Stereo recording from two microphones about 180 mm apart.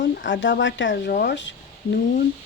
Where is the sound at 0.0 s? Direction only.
85° left.